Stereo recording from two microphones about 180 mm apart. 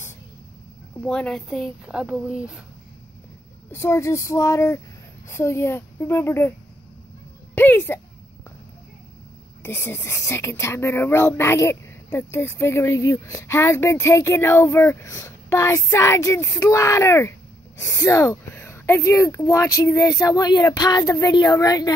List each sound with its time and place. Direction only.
1.0 s speech: 5° left (ahead or behind)
3.7 s speech: 15° left (ahead or behind)
7.5 s a sound: 10° left (ahead or behind)
9.6 s speech: 15° left (ahead or behind)